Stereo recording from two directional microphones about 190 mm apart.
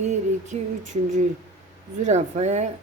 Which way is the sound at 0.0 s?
40° right (ahead or behind).